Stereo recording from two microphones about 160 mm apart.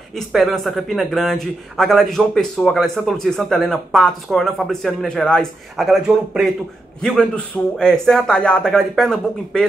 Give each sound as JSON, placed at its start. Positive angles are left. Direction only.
{"t": 0.1, "sound": "a man's voice", "side_deg": 0}